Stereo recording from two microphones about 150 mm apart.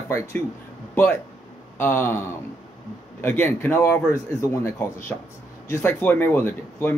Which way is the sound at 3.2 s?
15° left (ahead or behind).